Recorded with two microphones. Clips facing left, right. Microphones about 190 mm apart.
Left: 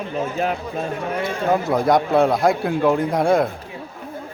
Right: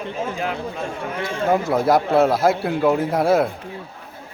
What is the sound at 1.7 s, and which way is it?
A man's voice, 5° right (ahead or behind).